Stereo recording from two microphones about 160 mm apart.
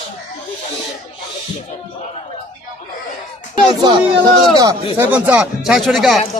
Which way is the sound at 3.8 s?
30° right (ahead or behind).